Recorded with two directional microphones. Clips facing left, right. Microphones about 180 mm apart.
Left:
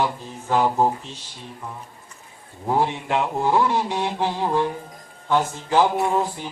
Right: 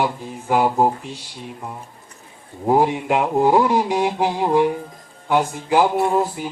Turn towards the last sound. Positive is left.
turn(degrees=-5)  # may be behind; listen again after turning